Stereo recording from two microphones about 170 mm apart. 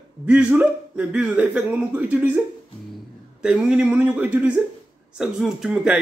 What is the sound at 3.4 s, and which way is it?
Speech, 5° right (ahead or behind).